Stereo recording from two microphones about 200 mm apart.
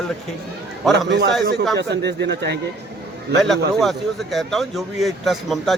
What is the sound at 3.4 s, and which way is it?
Speech, centre (ahead or behind).